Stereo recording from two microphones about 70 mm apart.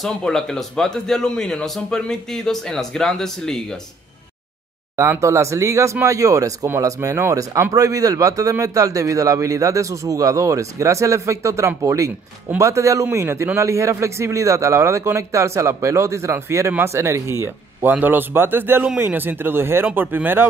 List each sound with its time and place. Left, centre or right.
0.2 s a man's voice: centre
5.2 s a man's voice: right
17.8 s speech: right